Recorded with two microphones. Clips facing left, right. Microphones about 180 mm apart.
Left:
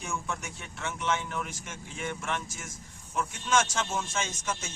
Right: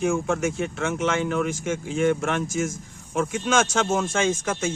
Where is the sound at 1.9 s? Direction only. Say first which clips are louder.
Right 12 dB; 80° right.